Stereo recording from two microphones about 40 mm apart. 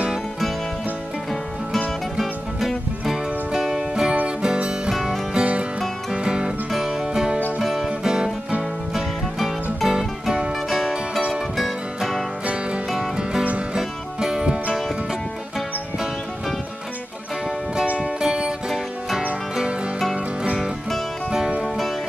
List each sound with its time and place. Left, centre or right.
3.1 s music: centre
3.9 s music: right
5.3 s music: right
6.7 s music: centre
8.0 s music: centre
9.8 s music: centre
13.7 s music: centre
17.9 s music: centre